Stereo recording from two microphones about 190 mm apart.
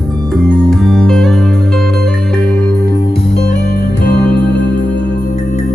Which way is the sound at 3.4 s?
55° left (ahead or behind).